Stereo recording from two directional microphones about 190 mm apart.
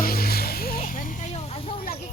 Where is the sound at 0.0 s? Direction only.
55° left (ahead or behind); by 1.7 s 35° left (ahead or behind).